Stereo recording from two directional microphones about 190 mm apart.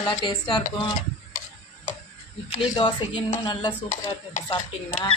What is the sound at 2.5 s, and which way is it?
Speech, 25° left (ahead or behind).